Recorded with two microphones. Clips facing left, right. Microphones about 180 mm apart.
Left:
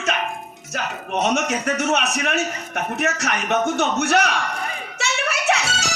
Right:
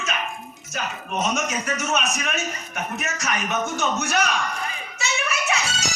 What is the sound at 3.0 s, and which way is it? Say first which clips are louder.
A man's voice: left 5 dB; 70° left (ahead or behind).